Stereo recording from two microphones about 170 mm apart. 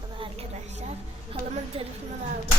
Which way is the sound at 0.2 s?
40° right (ahead or behind).